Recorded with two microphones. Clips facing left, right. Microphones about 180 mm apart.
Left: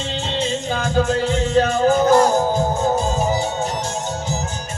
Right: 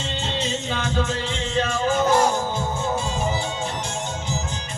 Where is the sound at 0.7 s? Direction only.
40° left (ahead or behind).